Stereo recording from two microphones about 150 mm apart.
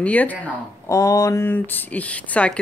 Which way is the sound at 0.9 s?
20° left (ahead or behind).